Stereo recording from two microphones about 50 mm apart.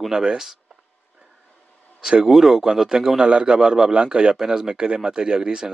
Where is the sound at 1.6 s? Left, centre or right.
Left.